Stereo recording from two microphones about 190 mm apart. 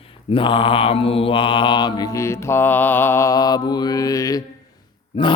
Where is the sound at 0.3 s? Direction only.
25° left (ahead or behind).